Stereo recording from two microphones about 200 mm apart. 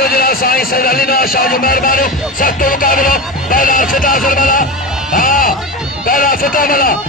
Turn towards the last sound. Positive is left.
turn(degrees=45)  # may be behind; listen again after turning